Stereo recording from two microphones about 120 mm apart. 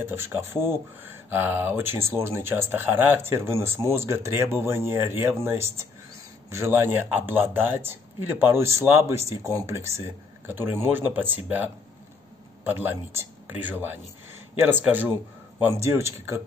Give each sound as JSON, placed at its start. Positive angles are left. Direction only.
{"t": 0.0, "sound": "speech", "side_deg": -20}